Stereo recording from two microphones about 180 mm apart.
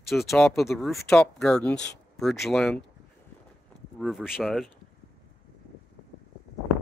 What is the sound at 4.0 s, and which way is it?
Speech, centre (ahead or behind).